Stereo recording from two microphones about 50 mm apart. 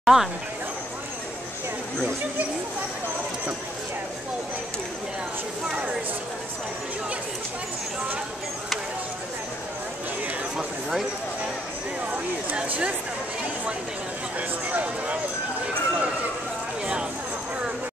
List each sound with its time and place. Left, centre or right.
0.0 s speech: centre
14.7 s speech: right
15.6 s a sound: right